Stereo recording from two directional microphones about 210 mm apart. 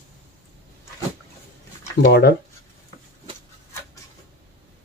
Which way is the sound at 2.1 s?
50° left (ahead or behind).